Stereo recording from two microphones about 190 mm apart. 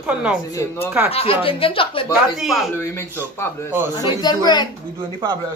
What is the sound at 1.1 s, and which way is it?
Speech, 30° left (ahead or behind).